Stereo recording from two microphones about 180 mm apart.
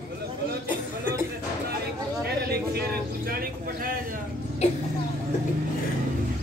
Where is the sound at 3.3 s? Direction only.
55° right (ahead or behind).